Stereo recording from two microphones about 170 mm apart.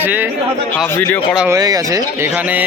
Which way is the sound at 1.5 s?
20° right (ahead or behind).